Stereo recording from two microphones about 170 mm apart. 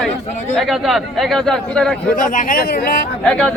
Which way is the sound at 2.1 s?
50° left (ahead or behind).